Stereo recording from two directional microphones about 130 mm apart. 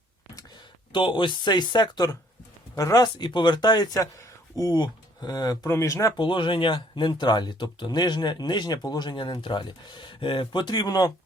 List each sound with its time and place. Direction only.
0.9 s speech: 40° left (ahead or behind)
6.1 s speech: 40° left (ahead or behind)